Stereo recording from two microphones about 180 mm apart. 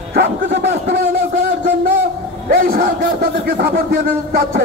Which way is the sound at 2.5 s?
55° right (ahead or behind).